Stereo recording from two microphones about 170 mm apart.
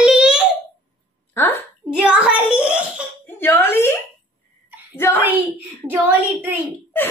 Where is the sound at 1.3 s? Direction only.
15° left (ahead or behind).